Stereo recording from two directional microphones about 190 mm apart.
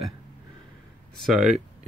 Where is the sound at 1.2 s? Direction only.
Centre (ahead or behind).